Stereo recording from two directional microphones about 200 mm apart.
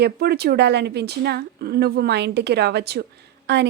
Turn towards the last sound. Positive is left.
turn(degrees=-55)  # may be behind; listen again after turning